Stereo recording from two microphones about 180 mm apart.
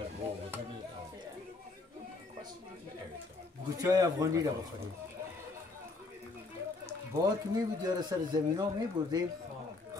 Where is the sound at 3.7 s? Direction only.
20° right (ahead or behind).